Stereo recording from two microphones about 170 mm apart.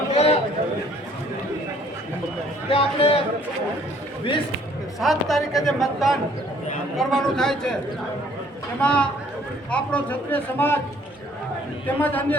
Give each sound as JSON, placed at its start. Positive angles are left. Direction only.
{"t": 0.1, "sound": "a sound", "side_deg": 40}
{"t": 2.6, "sound": "a man's voice", "side_deg": 35}
{"t": 4.9, "sound": "a man's voice", "side_deg": 0}
{"t": 8.8, "sound": "a man's voice", "side_deg": 5}
{"t": 11.9, "sound": "a man's voice", "side_deg": 10}